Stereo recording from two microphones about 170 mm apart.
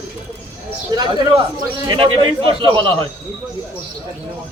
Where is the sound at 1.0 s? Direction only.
25° right (ahead or behind).